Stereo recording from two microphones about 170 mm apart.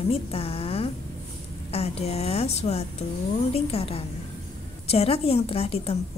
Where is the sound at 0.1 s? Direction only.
35° left (ahead or behind).